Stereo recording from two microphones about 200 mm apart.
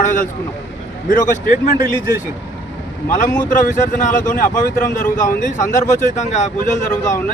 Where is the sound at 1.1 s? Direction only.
40° left (ahead or behind).